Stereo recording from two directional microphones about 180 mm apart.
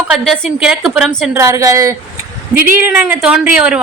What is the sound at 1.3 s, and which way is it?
A woman's voice, 15° right (ahead or behind).